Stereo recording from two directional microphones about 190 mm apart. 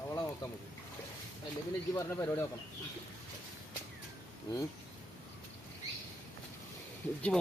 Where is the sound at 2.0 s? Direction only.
15° left (ahead or behind).